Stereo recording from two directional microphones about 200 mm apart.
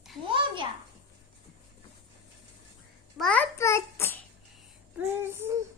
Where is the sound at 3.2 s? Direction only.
5° left (ahead or behind).